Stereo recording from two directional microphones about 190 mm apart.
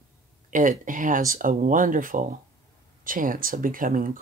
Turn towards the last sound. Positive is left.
turn(degrees=-45)  # may be behind; listen again after turning